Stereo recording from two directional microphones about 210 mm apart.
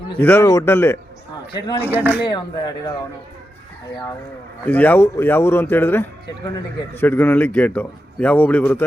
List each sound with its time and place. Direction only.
0.2 s speech: 10° left (ahead or behind)
1.9 s speech: 10° right (ahead or behind)
2.2 s speech: 20° left (ahead or behind)
4.6 s speech: 10° left (ahead or behind)